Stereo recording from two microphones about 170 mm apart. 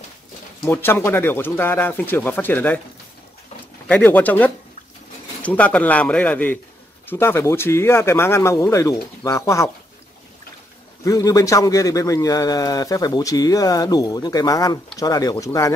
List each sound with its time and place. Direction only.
0.7 s speech: 15° left (ahead or behind)
3.8 s speech: 10° left (ahead or behind)
11.1 s speech: 20° left (ahead or behind)